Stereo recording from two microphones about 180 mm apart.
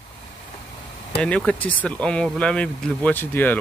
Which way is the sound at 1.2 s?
5° left (ahead or behind).